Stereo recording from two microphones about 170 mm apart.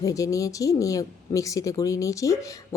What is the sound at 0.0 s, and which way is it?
Speech, 20° left (ahead or behind).